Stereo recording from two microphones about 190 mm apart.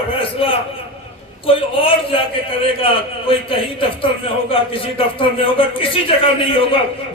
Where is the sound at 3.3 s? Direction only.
30° left (ahead or behind).